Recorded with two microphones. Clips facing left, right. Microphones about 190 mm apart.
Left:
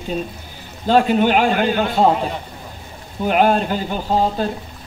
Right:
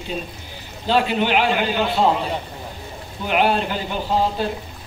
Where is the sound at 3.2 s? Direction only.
45° left (ahead or behind).